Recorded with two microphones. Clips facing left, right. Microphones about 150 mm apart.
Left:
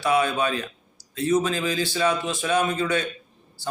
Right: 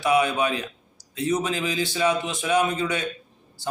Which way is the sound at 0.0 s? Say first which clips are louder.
Right 1 dB; 20° right (ahead or behind).